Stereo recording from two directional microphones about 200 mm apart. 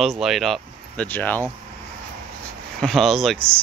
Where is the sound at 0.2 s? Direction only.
Centre (ahead or behind).